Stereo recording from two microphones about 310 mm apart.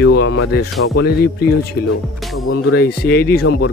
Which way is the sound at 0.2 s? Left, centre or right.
Left.